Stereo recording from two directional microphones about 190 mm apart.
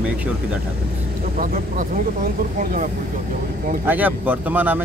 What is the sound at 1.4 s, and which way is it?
Speech, 45° right (ahead or behind).